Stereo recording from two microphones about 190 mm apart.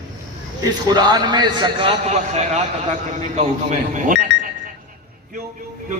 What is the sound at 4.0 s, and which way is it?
Speech, 45° right (ahead or behind).